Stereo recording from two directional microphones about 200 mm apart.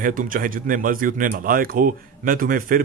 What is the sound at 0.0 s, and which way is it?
Speech, 45° right (ahead or behind).